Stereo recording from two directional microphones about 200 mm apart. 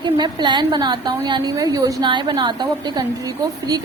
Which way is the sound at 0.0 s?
20° right (ahead or behind).